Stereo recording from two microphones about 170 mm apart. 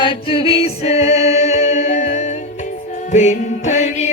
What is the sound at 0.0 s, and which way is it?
Music, 30° left (ahead or behind).